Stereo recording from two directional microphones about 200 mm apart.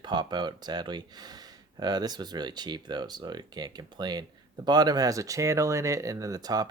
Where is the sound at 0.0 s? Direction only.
20° right (ahead or behind).